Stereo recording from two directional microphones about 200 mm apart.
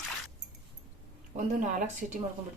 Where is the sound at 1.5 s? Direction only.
40° right (ahead or behind).